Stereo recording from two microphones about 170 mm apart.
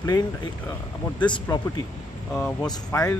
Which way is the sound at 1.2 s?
25° left (ahead or behind).